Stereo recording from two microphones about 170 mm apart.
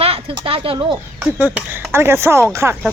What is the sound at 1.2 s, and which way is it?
Speech, 10° right (ahead or behind).